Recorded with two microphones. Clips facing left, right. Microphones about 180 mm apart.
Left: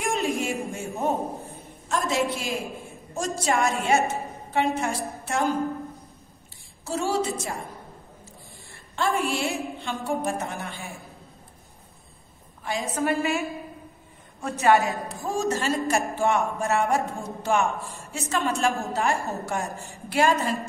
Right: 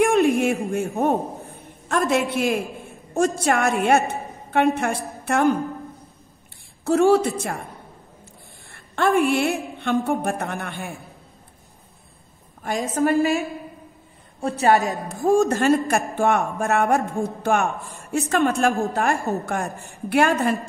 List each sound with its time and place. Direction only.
0.0 s a sound: 60° right (ahead or behind)
0.7 s a man's voice: 60° right (ahead or behind)
6.8 s a man's voice: 60° right (ahead or behind)
8.7 s a man's voice: 60° right (ahead or behind)
12.6 s a woman's voice: 50° right (ahead or behind)
13.0 s a woman's voice: 35° right (ahead or behind)
15.0 s a man's voice: 55° right (ahead or behind)